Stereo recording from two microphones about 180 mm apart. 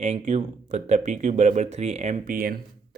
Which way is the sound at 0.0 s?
40° right (ahead or behind).